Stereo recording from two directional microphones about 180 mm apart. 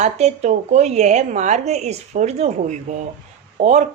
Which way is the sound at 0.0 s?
40° right (ahead or behind).